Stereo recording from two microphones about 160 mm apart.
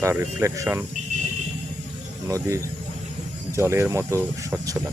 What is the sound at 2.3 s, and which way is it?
Speech, 20° right (ahead or behind).